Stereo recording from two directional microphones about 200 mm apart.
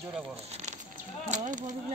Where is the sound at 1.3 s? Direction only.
40° right (ahead or behind).